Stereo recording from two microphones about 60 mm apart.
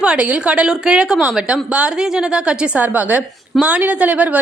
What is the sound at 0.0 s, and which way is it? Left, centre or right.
A woman's voice, right.